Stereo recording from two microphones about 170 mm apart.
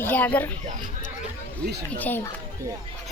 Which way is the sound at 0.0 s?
10° left (ahead or behind).